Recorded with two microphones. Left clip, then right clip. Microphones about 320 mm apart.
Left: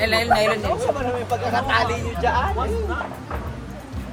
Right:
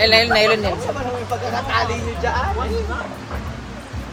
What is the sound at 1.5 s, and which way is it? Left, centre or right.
Speech, left.